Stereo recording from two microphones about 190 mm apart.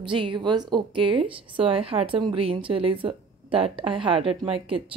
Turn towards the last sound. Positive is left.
turn(degrees=-30)  # may be behind; listen again after turning